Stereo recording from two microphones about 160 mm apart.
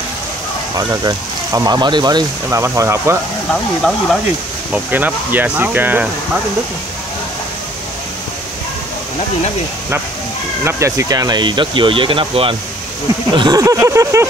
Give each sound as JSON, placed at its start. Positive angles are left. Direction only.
{"t": 0.7, "sound": "speech", "side_deg": -20}
{"t": 4.7, "sound": "speech", "side_deg": -10}
{"t": 10.6, "sound": "speech", "side_deg": -15}
{"t": 13.4, "sound": "speech", "side_deg": -20}